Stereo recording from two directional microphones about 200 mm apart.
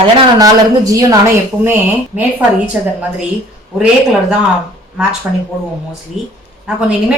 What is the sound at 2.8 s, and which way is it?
Speech, 5° right (ahead or behind).